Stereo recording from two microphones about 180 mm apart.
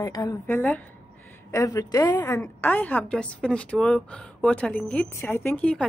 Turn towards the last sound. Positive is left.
turn(degrees=5)  # may be behind; listen again after turning